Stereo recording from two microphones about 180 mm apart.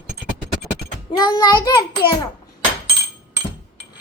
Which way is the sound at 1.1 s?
25° left (ahead or behind).